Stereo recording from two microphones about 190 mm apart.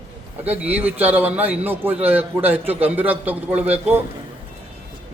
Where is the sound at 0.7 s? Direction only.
10° right (ahead or behind).